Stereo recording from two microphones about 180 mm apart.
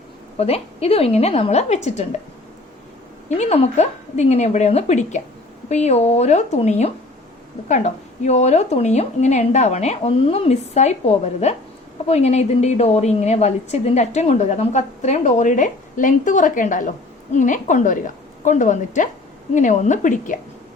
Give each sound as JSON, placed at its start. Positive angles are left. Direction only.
{"t": 0.3, "sound": "a woman's voice", "side_deg": 35}
{"t": 3.2, "sound": "a woman's voice", "side_deg": 35}